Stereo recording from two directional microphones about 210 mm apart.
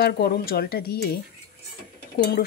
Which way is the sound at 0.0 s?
50° left (ahead or behind).